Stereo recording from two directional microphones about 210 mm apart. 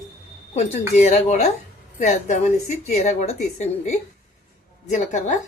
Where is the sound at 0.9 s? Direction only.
35° left (ahead or behind).